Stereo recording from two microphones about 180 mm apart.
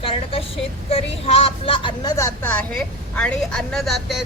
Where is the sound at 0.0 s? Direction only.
30° left (ahead or behind).